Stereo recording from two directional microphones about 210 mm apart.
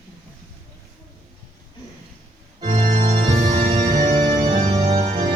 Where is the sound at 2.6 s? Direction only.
30° right (ahead or behind).